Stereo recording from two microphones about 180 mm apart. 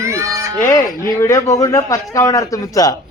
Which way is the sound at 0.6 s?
15° left (ahead or behind).